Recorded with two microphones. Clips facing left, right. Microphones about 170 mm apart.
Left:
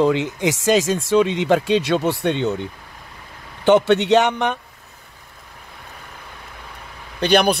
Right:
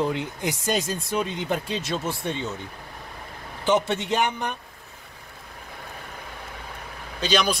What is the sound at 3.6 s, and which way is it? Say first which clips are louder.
Speech: left 8 dB; 70° left (ahead or behind).